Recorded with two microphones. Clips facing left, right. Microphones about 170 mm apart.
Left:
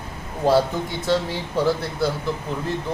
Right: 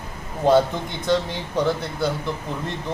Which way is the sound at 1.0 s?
5° left (ahead or behind).